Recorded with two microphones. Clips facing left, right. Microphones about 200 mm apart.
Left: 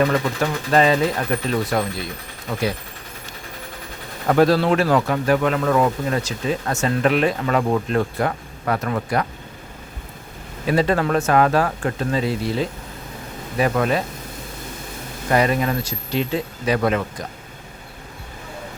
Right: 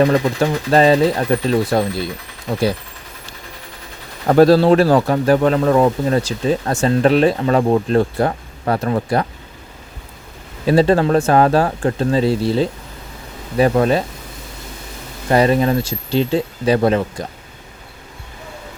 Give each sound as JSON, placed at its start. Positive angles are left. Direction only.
{"t": 0.0, "sound": "speech", "side_deg": -35}
{"t": 4.3, "sound": "speech", "side_deg": -35}
{"t": 10.7, "sound": "speech", "side_deg": -30}
{"t": 15.3, "sound": "speech", "side_deg": -30}